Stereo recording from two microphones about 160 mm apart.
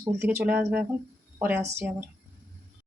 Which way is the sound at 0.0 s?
15° right (ahead or behind).